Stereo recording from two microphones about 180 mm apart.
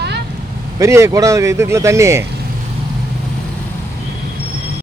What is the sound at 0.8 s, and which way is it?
A man's voice, 15° right (ahead or behind).